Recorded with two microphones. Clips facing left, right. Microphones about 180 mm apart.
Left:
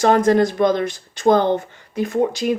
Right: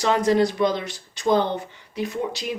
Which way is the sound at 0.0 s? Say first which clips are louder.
Left 5 dB; 50° left (ahead or behind).